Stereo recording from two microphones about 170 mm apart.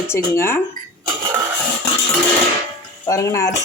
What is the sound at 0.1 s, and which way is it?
Speech, 15° left (ahead or behind).